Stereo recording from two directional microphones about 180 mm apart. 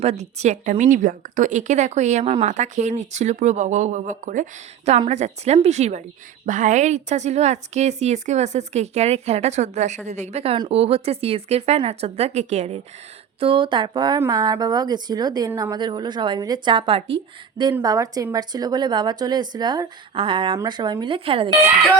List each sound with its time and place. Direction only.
0.0 s speech: 35° right (ahead or behind)